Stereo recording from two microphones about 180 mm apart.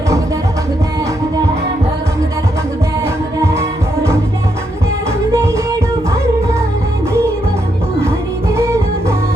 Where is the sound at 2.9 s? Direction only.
15° right (ahead or behind).